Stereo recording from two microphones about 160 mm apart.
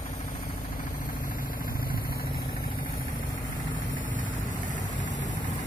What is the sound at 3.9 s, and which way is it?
Vehicle, 55° left (ahead or behind).